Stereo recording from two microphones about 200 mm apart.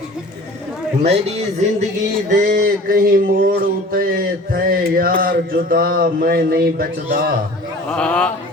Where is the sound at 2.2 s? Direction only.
40° right (ahead or behind).